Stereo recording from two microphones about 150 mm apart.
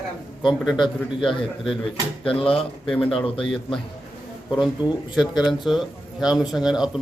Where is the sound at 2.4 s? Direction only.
40° left (ahead or behind).